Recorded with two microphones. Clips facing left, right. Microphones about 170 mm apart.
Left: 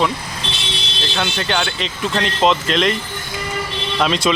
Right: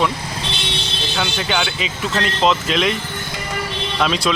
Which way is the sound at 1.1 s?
5° right (ahead or behind).